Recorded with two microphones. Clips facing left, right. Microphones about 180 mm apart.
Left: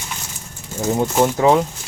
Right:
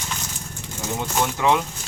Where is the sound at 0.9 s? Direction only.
35° left (ahead or behind).